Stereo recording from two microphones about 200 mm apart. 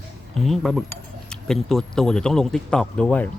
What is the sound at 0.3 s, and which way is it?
A man's voice, centre (ahead or behind).